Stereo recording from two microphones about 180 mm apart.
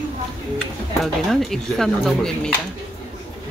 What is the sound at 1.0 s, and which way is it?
Speech, centre (ahead or behind).